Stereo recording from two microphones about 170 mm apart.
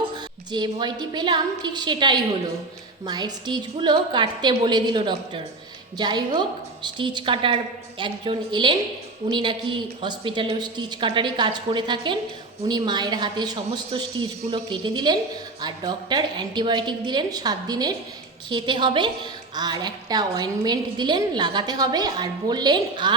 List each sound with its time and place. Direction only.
0.5 s a woman's voice: 25° right (ahead or behind)